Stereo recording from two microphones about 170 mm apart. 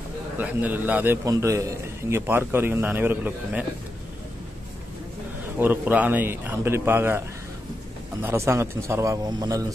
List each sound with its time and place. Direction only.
0.4 s a man's voice: 10° right (ahead or behind)
5.6 s a man's voice: 10° right (ahead or behind)